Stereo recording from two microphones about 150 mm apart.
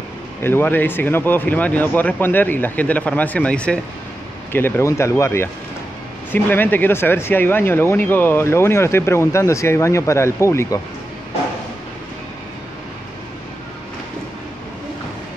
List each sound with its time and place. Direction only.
0.4 s speech: 15° left (ahead or behind)